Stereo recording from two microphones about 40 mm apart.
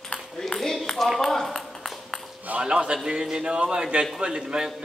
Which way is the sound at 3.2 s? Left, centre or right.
Centre.